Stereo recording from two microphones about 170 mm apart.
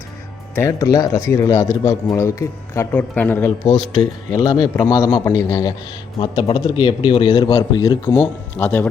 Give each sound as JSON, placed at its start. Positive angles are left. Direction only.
{"t": 0.5, "sound": "a man's voice", "side_deg": 20}
{"t": 6.1, "sound": "a man's voice", "side_deg": 25}
{"t": 8.0, "sound": "speech", "side_deg": 10}